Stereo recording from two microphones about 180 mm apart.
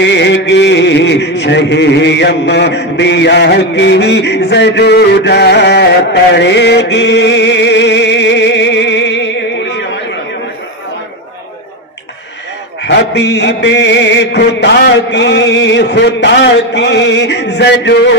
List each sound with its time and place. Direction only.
0.0 s music: 75° left (ahead or behind)
6.3 s chant: 75° left (ahead or behind)
12.8 s music: 70° left (ahead or behind)